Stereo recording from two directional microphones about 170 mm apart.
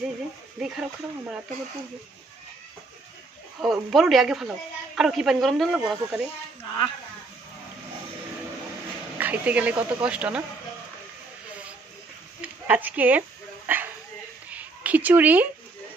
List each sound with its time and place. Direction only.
0.6 s speech: 5° right (ahead or behind)
3.6 s speech: centre (ahead or behind)
9.2 s speech: 10° right (ahead or behind)
12.4 s speech: 10° right (ahead or behind)
13.7 s dog: 10° right (ahead or behind)
14.5 s a sound: 10° right (ahead or behind)